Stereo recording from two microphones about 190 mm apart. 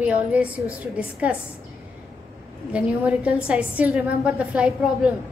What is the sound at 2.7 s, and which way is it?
A woman's voice, 5° right (ahead or behind).